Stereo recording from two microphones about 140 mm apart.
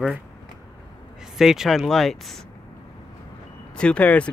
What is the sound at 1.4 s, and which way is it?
Speech, 5° right (ahead or behind).